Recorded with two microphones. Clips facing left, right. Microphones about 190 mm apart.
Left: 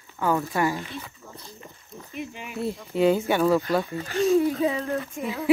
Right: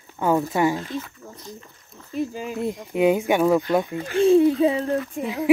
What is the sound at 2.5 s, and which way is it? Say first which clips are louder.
Speech: even; 15° right (ahead or behind).